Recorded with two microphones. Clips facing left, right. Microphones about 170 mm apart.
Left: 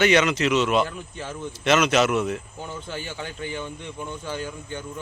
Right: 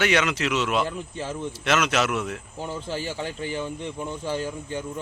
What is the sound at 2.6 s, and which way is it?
Speech, 30° right (ahead or behind).